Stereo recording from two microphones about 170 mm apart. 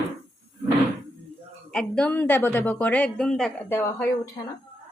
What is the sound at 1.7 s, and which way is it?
A woman's voice, 5° left (ahead or behind).